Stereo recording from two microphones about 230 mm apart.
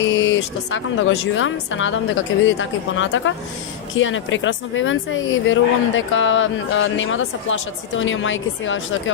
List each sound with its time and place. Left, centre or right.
0.0 s a woman's voice: left